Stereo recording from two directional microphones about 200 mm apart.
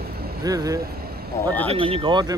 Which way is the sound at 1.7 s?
30° right (ahead or behind).